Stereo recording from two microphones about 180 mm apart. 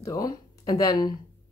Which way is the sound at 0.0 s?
20° left (ahead or behind).